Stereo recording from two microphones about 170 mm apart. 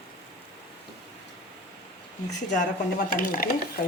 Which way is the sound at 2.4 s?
50° left (ahead or behind).